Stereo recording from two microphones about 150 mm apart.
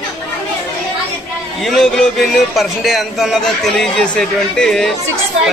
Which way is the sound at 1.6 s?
Centre (ahead or behind).